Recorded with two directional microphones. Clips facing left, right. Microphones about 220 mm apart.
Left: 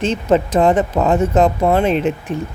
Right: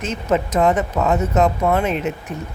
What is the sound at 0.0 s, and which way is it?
Speech, 30° left (ahead or behind).